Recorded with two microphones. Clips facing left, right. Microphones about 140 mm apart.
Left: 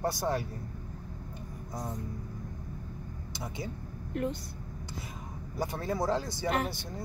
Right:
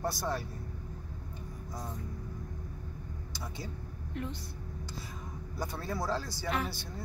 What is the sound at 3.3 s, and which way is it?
Speech, 20° left (ahead or behind).